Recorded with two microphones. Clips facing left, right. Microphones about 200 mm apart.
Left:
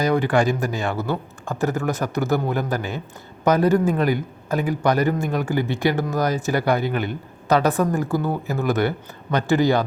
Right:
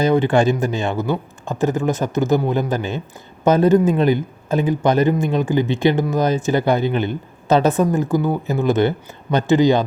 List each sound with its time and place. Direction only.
0.0 s a man's voice: 25° right (ahead or behind)